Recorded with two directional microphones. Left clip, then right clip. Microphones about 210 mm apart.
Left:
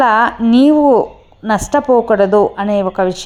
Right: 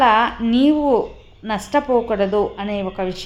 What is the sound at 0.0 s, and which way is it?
A woman's voice, 25° left (ahead or behind).